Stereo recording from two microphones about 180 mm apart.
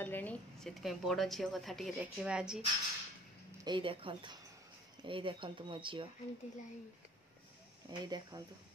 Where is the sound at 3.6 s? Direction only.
30° right (ahead or behind).